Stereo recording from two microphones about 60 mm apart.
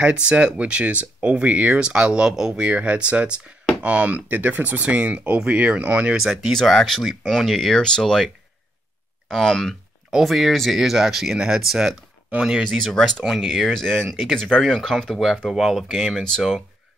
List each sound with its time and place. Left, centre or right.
0.0 s speech: centre
2.6 s speech: right
6.5 s speech: centre
9.3 s speech: centre
12.6 s speech: centre